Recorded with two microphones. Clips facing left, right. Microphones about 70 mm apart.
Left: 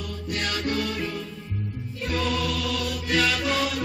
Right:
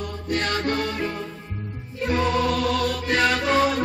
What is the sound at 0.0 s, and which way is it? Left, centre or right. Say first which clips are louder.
Music: right 4 dB; right.